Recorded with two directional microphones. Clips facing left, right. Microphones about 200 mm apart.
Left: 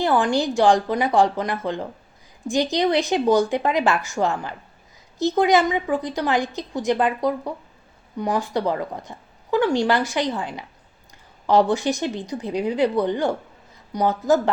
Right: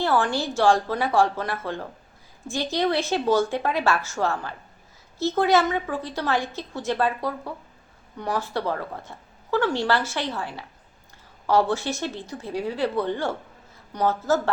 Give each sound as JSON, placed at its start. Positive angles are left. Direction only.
{"t": 0.0, "sound": "speech", "side_deg": 15}